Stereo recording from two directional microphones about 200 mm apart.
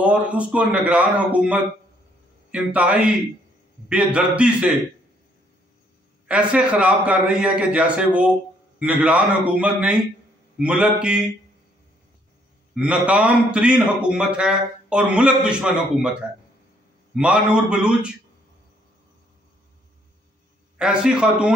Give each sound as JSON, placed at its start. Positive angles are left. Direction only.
{"t": 0.0, "sound": "a man's voice", "side_deg": -5}
{"t": 6.2, "sound": "a man's voice", "side_deg": -5}
{"t": 12.7, "sound": "a man's voice", "side_deg": -5}
{"t": 20.7, "sound": "a man's voice", "side_deg": -5}